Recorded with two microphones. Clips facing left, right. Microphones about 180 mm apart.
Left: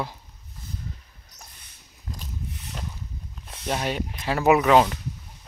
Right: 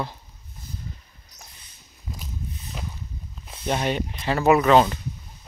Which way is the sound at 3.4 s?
Centre (ahead or behind).